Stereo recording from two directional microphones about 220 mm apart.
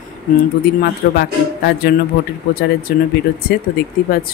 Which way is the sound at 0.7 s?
45° left (ahead or behind).